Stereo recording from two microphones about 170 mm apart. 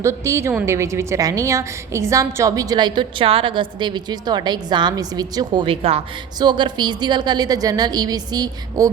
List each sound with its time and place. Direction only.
0.0 s a woman's voice: 15° right (ahead or behind)